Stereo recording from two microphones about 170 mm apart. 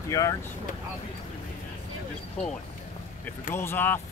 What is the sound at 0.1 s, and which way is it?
Speech, 20° left (ahead or behind).